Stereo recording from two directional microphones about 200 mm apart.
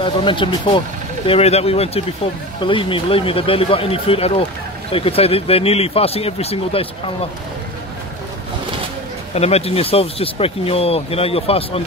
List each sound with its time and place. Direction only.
0.0 s speech: 25° left (ahead or behind)
9.3 s speech: 30° left (ahead or behind)